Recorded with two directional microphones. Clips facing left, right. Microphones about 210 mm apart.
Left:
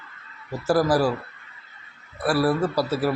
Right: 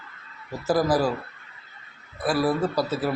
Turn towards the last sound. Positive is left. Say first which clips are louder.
# left 2 dB
turn(degrees=10)  # may be behind; listen again after turning